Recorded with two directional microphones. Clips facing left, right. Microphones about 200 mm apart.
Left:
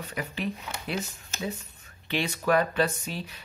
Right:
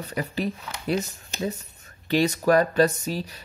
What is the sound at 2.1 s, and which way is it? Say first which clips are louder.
Speech: right 6 dB; 40° right (ahead or behind).